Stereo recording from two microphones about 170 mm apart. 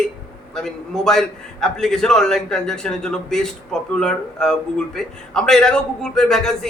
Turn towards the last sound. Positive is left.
turn(degrees=0)  # may be behind; listen again after turning